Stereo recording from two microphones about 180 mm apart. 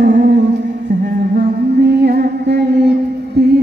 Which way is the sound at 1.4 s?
65° right (ahead or behind).